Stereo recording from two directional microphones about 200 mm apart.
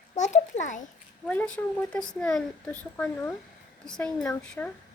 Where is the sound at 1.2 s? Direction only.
5° left (ahead or behind).